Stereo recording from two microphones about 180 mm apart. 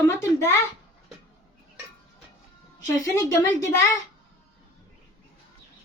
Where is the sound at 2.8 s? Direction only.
15° left (ahead or behind).